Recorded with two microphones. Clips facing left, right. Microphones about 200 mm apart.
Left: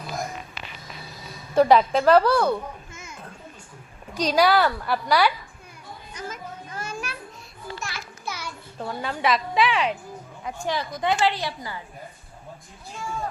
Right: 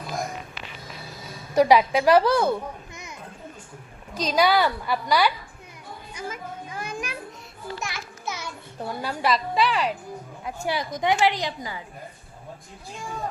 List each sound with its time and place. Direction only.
1.5 s a child's voice: 10° right (ahead or behind)
4.1 s a woman's voice: 10° left (ahead or behind)
6.1 s a sound: 10° right (ahead or behind)
8.8 s a woman's voice: 5° right (ahead or behind)
10.4 s speech: 10° right (ahead or behind)